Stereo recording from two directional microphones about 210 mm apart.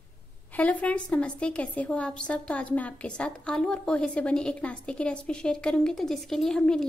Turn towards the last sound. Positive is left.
turn(degrees=5)  # may be behind; listen again after turning